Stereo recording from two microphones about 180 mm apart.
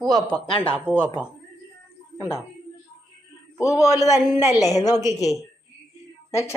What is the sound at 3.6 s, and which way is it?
A man's voice, 15° left (ahead or behind).